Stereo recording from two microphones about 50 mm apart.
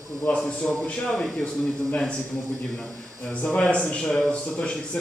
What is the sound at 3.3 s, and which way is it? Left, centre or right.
A man's voice, left.